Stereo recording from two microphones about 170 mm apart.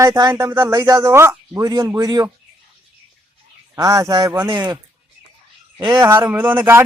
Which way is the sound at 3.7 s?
20° right (ahead or behind).